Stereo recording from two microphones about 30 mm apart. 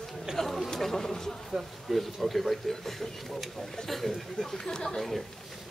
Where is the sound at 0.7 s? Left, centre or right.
Centre.